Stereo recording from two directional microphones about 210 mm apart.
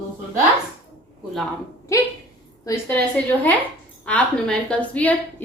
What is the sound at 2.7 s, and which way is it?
A woman's voice, 10° left (ahead or behind).